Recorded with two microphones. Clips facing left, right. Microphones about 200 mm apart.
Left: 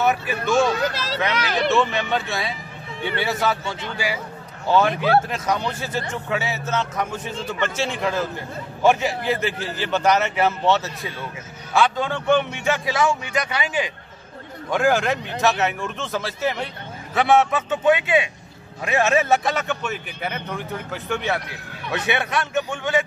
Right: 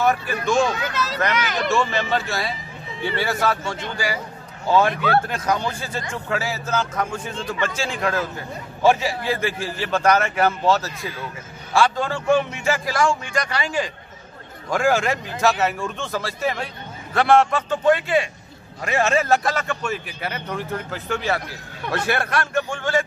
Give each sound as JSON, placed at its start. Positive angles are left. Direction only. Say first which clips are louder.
{"t": 0.0, "sound": "a man's voice", "louder": "right 1 dB", "side_deg": 5}
{"t": 0.7, "sound": "speech", "louder": "left 2 dB", "side_deg": 35}
{"t": 1.6, "sound": "a man's voice", "louder": "left 3 dB", "side_deg": 0}